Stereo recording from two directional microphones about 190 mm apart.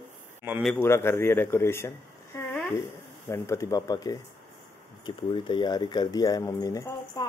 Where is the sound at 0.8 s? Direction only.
15° left (ahead or behind).